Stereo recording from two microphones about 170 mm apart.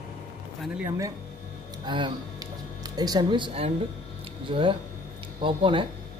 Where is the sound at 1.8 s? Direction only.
25° right (ahead or behind).